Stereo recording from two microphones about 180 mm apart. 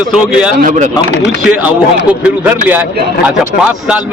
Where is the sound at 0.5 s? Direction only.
45° right (ahead or behind).